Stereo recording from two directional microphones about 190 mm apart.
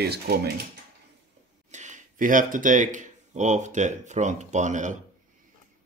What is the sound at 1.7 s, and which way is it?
Speech, 40° right (ahead or behind).